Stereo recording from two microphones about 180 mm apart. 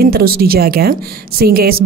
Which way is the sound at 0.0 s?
55° right (ahead or behind).